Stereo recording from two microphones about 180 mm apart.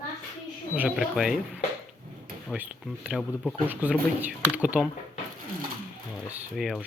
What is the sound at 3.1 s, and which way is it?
Speech, centre (ahead or behind).